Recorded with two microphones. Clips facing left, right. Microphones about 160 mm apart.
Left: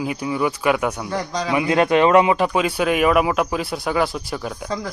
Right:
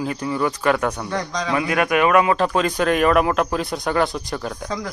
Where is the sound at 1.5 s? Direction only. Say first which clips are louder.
Left 3 dB; 25° left (ahead or behind).